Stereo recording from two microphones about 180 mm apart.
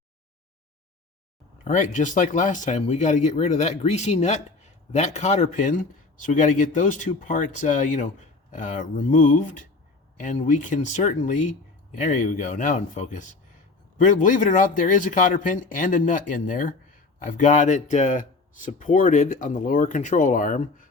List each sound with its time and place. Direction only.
1.6 s speech: 40° left (ahead or behind)